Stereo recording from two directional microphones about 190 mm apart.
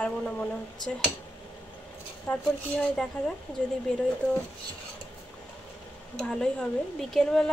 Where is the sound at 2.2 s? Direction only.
5° left (ahead or behind).